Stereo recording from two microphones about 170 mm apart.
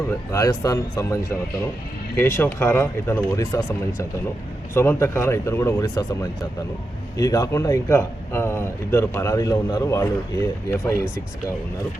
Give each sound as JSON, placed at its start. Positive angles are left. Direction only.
{"t": 0.3, "sound": "a man's voice", "side_deg": 20}